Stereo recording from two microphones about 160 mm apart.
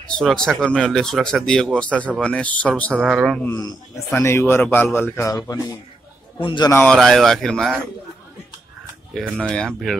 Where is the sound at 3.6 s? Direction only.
20° left (ahead or behind).